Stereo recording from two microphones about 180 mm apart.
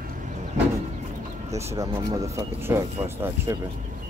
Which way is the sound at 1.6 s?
15° right (ahead or behind).